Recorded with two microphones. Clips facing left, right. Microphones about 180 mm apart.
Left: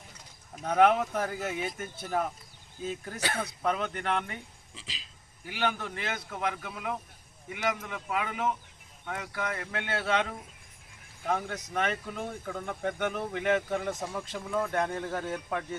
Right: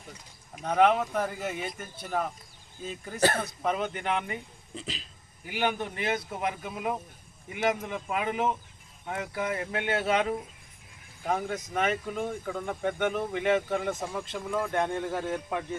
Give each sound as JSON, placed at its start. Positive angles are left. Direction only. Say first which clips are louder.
{"t": 0.6, "sound": "speech", "louder": "even", "side_deg": 0}
{"t": 3.2, "sound": "speech", "louder": "right 10 dB", "side_deg": -60}
{"t": 3.6, "sound": "speech", "louder": "even", "side_deg": -5}
{"t": 5.5, "sound": "a man's voice", "louder": "right 2 dB", "side_deg": -15}
{"t": 11.4, "sound": "speech", "louder": "right 3 dB", "side_deg": -5}
{"t": 15.0, "sound": "a man's voice", "louder": "right 3 dB", "side_deg": -5}